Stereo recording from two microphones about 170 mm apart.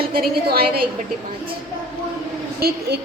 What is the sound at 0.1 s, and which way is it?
Speech, 65° right (ahead or behind).